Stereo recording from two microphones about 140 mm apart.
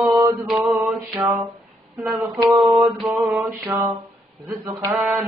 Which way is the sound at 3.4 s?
25° right (ahead or behind).